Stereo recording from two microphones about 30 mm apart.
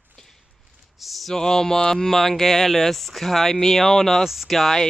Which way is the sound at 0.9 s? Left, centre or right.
Centre.